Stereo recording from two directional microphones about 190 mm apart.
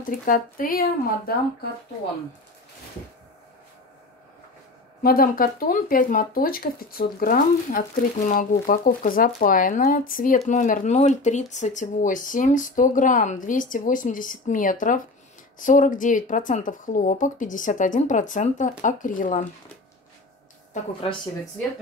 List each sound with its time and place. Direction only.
0.2 s speech: 45° left (ahead or behind)
5.0 s speech: 50° left (ahead or behind)
20.7 s a woman's voice: 30° left (ahead or behind)